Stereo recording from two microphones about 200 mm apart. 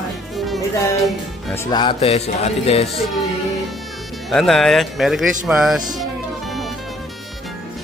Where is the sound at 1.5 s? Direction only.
20° left (ahead or behind).